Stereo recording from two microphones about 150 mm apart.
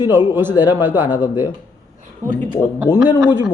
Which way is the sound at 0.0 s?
15° right (ahead or behind).